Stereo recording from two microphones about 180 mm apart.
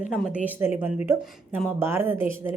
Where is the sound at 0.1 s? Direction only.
10° right (ahead or behind).